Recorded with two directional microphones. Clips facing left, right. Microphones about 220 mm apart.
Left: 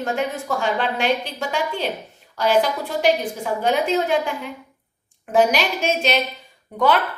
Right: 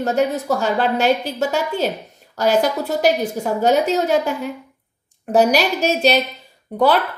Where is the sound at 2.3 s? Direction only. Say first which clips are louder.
Right 2 dB; 45° right (ahead or behind).